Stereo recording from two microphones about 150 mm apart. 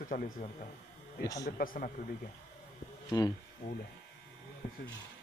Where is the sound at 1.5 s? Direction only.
70° left (ahead or behind).